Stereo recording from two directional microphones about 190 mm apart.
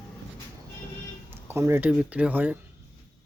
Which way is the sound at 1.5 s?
15° right (ahead or behind).